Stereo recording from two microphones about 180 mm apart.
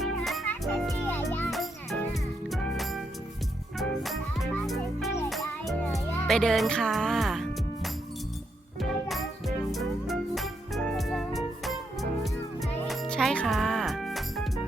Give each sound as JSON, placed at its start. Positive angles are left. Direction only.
{"t": 0.0, "sound": "music", "side_deg": 0}
{"t": 1.0, "sound": "music", "side_deg": 10}
{"t": 1.5, "sound": "music", "side_deg": 0}